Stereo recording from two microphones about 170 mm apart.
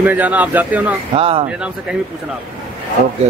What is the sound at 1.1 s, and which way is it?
Speech, 35° right (ahead or behind).